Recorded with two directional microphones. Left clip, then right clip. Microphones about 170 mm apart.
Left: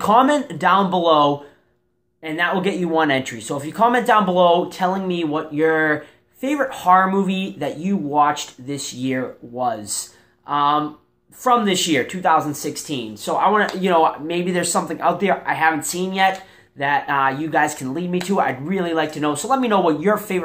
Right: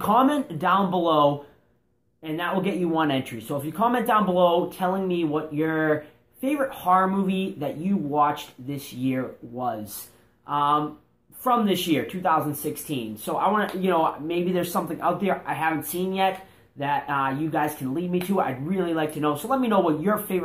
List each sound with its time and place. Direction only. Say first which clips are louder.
0.0 s speech: left 6 dB; 20° left (ahead or behind)